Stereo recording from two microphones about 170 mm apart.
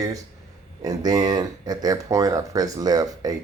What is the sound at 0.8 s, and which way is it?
Speech, 20° right (ahead or behind).